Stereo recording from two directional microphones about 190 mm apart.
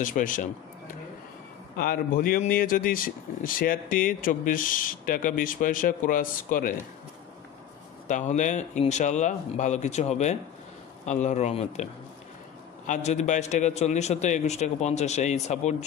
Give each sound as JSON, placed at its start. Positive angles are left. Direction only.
{"t": 0.0, "sound": "speech", "side_deg": 45}
{"t": 1.8, "sound": "speech", "side_deg": 50}
{"t": 8.1, "sound": "a man's voice", "side_deg": 40}